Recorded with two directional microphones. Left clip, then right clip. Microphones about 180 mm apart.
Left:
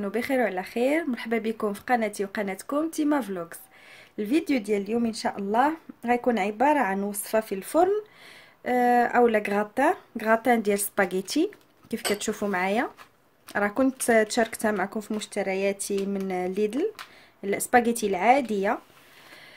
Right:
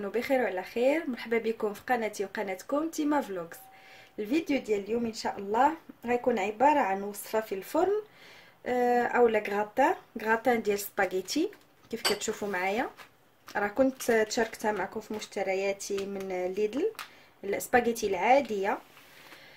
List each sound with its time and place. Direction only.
0.0 s speech: 40° left (ahead or behind)